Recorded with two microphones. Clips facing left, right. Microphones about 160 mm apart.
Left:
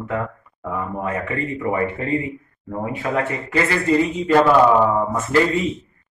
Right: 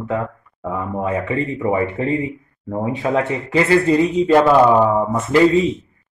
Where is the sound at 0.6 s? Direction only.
15° right (ahead or behind).